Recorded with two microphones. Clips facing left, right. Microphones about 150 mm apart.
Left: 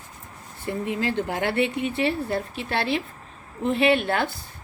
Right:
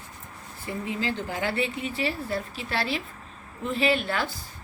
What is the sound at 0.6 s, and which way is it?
Speech, 60° left (ahead or behind).